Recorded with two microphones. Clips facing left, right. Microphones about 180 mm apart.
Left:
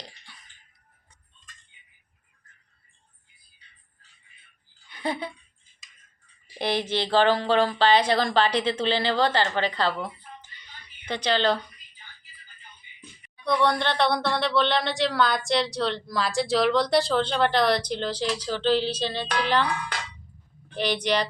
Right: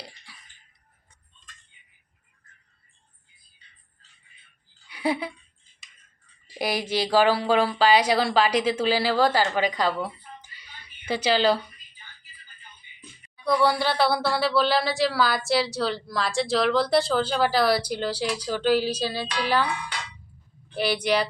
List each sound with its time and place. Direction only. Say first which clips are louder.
4.9 s a sound: right 4 dB; 10° right (ahead or behind)
6.6 s speech: even; 10° right (ahead or behind)
13.4 s speech: right 1 dB; 5° right (ahead or behind)
20.7 s speech: right 1 dB; 10° right (ahead or behind)